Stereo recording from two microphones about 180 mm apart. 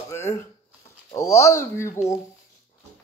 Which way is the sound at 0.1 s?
15° left (ahead or behind).